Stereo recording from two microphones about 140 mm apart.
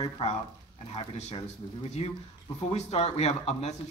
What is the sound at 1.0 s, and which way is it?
Speech, 45° left (ahead or behind).